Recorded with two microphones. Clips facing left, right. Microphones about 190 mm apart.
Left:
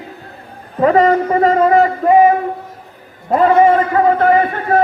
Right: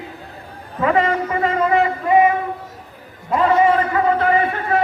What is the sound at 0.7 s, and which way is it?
A man's voice, 35° left (ahead or behind).